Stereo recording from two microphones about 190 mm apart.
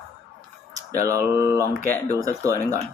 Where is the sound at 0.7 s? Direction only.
15° right (ahead or behind).